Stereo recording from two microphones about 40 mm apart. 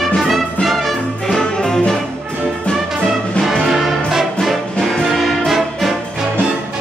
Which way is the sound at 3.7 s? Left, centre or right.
Centre.